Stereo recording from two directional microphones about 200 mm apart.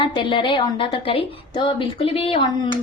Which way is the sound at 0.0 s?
25° left (ahead or behind).